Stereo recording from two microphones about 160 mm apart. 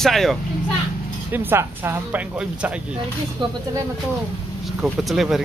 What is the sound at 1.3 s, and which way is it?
Speech, 15° right (ahead or behind).